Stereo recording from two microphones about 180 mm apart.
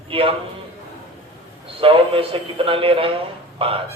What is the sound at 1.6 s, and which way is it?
A man's voice, 30° right (ahead or behind).